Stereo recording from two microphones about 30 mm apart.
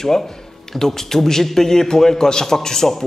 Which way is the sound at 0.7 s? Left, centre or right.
Centre.